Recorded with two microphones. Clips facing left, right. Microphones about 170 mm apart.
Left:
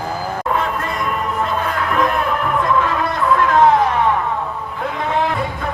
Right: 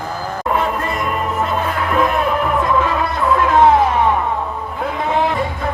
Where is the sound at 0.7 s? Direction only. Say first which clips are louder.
Right 2 dB; 15° right (ahead or behind).